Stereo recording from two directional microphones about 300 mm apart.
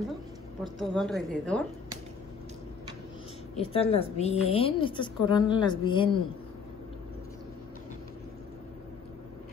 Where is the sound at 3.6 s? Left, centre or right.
Centre.